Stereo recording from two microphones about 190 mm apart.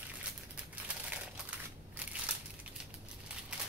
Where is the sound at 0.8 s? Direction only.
5° right (ahead or behind).